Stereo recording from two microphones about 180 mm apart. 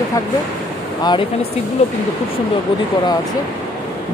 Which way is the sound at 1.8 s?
35° left (ahead or behind).